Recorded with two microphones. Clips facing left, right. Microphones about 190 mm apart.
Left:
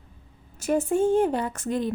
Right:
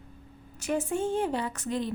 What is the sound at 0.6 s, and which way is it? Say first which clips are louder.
A woman's voice: left 6 dB; 45° left (ahead or behind).